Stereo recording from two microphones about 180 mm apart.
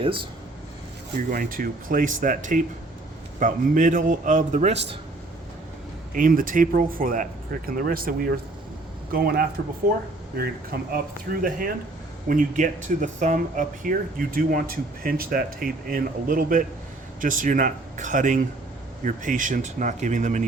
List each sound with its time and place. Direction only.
1.3 s speech: 50° right (ahead or behind)
6.1 s speech: 50° right (ahead or behind)